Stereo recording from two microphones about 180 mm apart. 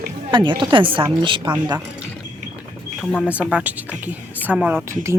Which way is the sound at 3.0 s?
5° left (ahead or behind).